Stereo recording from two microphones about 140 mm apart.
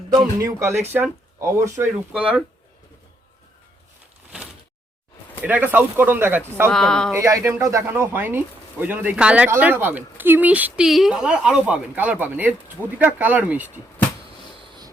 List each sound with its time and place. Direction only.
0.3 s speech: 20° right (ahead or behind)
5.4 s speech: 10° right (ahead or behind)
6.7 s speech: 5° left (ahead or behind)
7.1 s speech: 20° right (ahead or behind)